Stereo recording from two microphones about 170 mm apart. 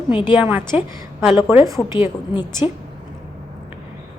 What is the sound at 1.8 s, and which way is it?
Speech, 15° left (ahead or behind).